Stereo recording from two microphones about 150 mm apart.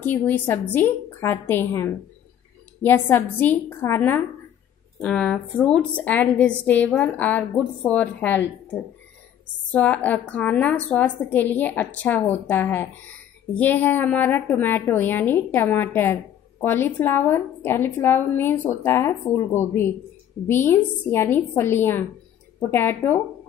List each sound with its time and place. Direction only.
0.0 s a woman's voice: 10° left (ahead or behind)